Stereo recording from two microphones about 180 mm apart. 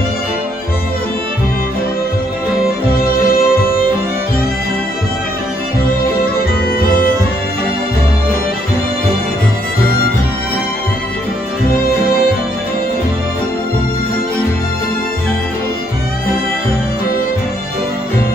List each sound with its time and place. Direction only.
3.3 s music: 55° left (ahead or behind)